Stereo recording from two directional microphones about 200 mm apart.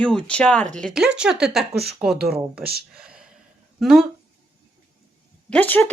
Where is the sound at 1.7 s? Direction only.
55° right (ahead or behind).